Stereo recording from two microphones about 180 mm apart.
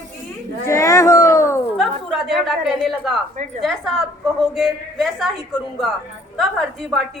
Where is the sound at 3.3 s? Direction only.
45° right (ahead or behind).